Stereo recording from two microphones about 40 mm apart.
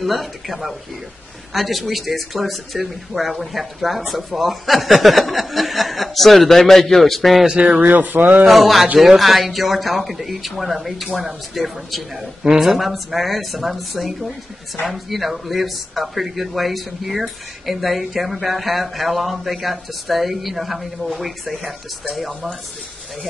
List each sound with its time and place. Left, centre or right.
0.0 s speech: centre
7.8 s speech: right
8.5 s speech: centre